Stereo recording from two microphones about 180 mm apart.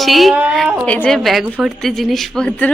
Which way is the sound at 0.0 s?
Centre (ahead or behind).